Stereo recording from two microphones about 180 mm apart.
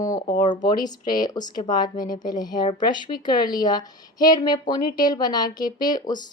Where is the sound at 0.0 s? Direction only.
20° left (ahead or behind).